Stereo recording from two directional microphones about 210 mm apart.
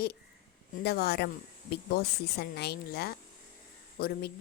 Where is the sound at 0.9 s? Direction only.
50° left (ahead or behind).